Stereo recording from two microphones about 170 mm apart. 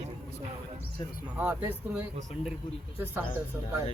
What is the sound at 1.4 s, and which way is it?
Speech, 10° right (ahead or behind).